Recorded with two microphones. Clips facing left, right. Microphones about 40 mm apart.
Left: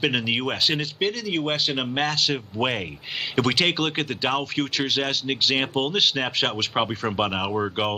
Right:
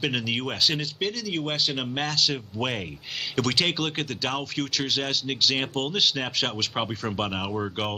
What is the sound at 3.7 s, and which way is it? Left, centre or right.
Speech, centre.